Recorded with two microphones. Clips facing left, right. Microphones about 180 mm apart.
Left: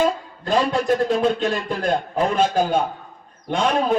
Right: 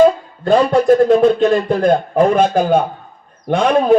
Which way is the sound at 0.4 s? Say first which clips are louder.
Right 8 dB; 55° right (ahead or behind).